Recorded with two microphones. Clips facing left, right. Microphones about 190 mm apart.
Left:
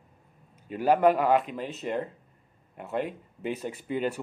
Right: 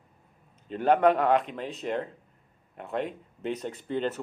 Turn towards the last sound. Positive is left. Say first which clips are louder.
# even
turn(degrees=10)  # may be behind; listen again after turning